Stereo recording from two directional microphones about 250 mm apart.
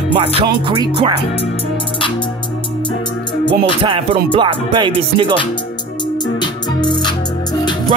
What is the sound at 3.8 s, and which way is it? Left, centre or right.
Music, centre.